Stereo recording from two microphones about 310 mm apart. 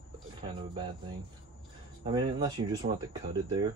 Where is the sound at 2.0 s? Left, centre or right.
Centre.